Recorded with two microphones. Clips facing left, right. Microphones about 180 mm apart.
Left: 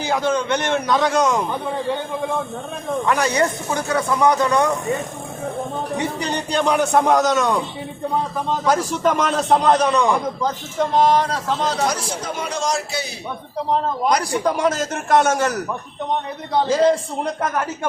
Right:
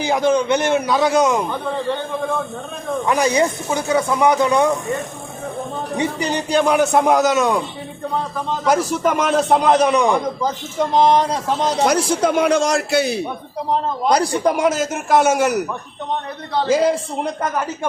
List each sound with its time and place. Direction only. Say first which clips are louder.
0.0 s a man's voice: right 4 dB; 15° right (ahead or behind)
3.1 s a man's voice: right 3 dB; 10° right (ahead or behind)
6.0 s a man's voice: right 6 dB; 5° right (ahead or behind)
8.6 s a man's voice: right 2 dB; 10° right (ahead or behind)
11.9 s a man's voice: right 8 dB; 70° right (ahead or behind)
14.4 s a man's voice: right 2 dB; 10° right (ahead or behind)
16.6 s a man's voice: right 1 dB; 10° right (ahead or behind)